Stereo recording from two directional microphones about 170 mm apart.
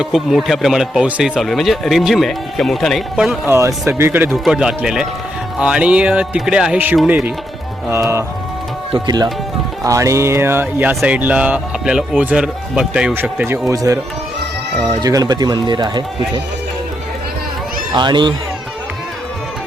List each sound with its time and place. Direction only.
0.0 s speech: centre (ahead or behind)
4.3 s speech: 5° right (ahead or behind)
7.9 s speech: 15° right (ahead or behind)
15.0 s speech: 20° right (ahead or behind)
17.9 s speech: 25° right (ahead or behind)